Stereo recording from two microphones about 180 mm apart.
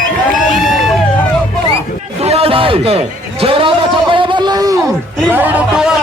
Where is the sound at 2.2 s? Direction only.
35° right (ahead or behind).